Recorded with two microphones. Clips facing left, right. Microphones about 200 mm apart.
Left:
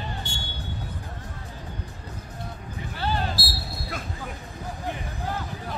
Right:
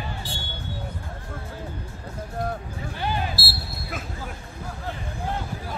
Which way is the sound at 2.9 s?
15° right (ahead or behind).